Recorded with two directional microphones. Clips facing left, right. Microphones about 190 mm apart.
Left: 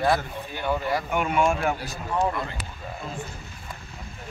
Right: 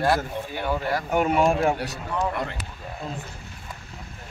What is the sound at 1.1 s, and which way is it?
Speech, 40° right (ahead or behind).